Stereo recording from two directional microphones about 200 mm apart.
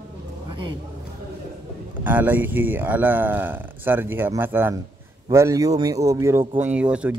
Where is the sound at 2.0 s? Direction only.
10° right (ahead or behind).